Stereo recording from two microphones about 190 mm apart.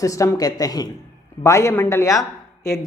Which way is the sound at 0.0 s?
15° left (ahead or behind).